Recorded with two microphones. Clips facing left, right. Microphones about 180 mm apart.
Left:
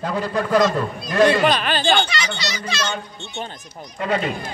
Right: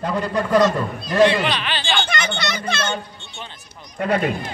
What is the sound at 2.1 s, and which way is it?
Speech, 55° right (ahead or behind).